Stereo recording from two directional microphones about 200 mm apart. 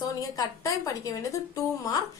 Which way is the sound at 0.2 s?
15° left (ahead or behind).